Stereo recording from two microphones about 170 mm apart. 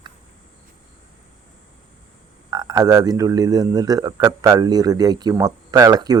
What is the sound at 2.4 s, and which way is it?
Speech, 20° right (ahead or behind).